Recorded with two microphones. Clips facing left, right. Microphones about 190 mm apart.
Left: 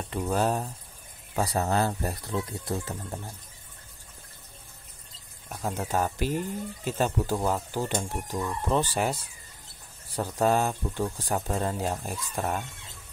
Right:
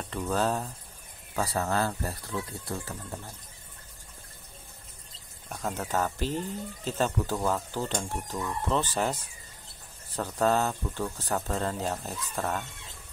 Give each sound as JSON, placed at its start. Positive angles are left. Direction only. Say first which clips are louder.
{"t": 0.1, "sound": "speech", "louder": "left 2 dB", "side_deg": 15}
{"t": 5.7, "sound": "speech", "louder": "left 2 dB", "side_deg": 15}